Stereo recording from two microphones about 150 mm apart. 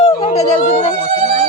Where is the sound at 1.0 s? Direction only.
45° right (ahead or behind).